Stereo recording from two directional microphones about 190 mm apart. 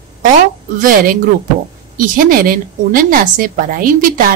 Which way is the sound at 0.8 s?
45° right (ahead or behind).